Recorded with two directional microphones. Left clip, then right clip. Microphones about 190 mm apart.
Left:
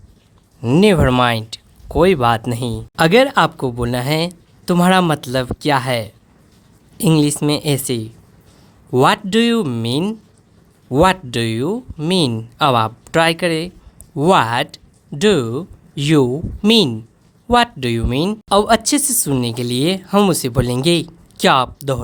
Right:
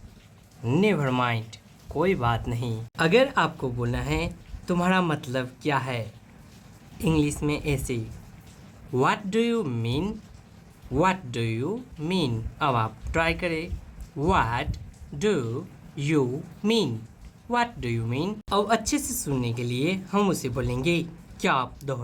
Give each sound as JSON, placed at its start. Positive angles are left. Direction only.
{"t": 0.6, "sound": "speech", "side_deg": 50}